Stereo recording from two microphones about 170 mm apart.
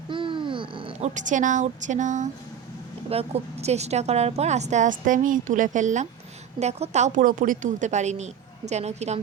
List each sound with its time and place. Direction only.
0.1 s babbling: 30° right (ahead or behind)
1.1 s a woman's voice: 50° right (ahead or behind)
3.1 s a woman's voice: 35° right (ahead or behind)